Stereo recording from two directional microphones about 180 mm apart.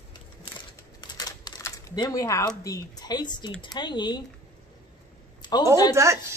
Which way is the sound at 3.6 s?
25° left (ahead or behind).